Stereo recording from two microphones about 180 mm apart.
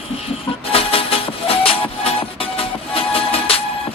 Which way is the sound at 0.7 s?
30° left (ahead or behind).